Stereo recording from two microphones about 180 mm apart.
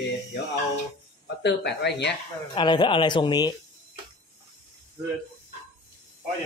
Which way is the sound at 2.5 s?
25° left (ahead or behind).